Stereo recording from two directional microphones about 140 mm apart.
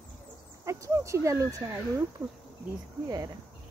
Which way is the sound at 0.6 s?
20° right (ahead or behind).